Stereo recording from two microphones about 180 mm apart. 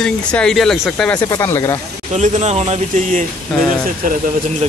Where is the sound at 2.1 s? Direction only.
40° right (ahead or behind).